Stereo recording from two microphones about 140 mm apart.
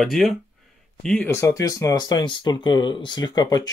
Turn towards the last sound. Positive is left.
turn(degrees=30)  # may be behind; listen again after turning